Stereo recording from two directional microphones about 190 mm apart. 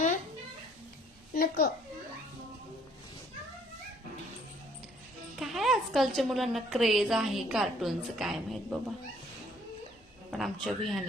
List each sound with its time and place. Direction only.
1.3 s a sound: 50° left (ahead or behind)
5.4 s a woman's voice: centre (ahead or behind)
10.3 s a woman's voice: centre (ahead or behind)